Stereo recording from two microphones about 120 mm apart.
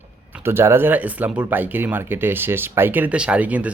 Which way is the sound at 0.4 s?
20° right (ahead or behind).